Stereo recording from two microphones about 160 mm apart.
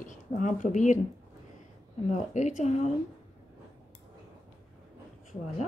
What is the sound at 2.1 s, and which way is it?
Speech, 45° left (ahead or behind).